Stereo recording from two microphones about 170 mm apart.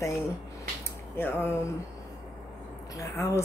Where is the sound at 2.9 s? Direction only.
15° left (ahead or behind).